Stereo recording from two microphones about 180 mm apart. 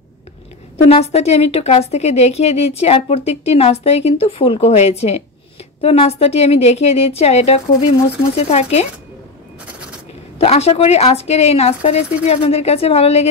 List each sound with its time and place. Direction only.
0.8 s a woman's voice: 35° left (ahead or behind)
10.4 s a woman's voice: 35° left (ahead or behind)